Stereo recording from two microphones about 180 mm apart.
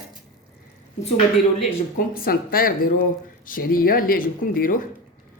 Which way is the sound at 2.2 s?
50° left (ahead or behind).